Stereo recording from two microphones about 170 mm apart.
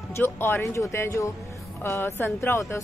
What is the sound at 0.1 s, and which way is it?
Speech, 15° left (ahead or behind).